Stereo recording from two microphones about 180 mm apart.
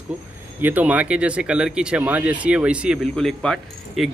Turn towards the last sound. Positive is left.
turn(degrees=0)  # may be behind; listen again after turning